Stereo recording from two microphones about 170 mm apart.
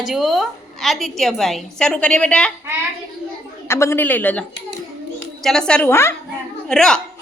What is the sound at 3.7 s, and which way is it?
Speech, 15° left (ahead or behind).